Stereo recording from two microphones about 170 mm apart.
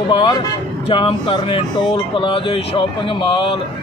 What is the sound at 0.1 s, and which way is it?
Speech, 30° left (ahead or behind).